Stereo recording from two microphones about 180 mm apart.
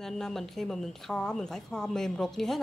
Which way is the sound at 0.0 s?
Centre (ahead or behind).